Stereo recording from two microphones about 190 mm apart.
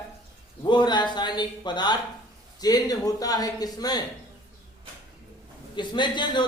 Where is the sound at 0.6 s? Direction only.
25° left (ahead or behind).